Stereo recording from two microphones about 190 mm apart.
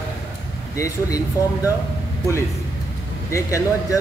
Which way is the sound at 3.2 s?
15° left (ahead or behind).